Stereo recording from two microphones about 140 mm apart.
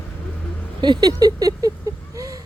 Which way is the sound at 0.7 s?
30° right (ahead or behind).